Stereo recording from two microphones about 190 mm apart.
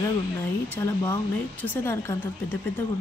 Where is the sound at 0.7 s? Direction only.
15° left (ahead or behind).